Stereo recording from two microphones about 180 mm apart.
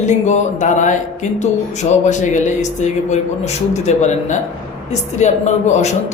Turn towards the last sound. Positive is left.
turn(degrees=40)  # may be behind; listen again after turning